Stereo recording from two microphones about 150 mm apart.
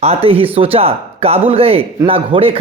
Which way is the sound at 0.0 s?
40° right (ahead or behind).